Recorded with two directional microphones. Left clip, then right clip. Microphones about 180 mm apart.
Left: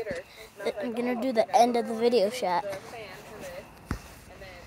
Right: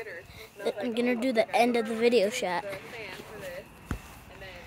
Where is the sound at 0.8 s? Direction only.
25° right (ahead or behind).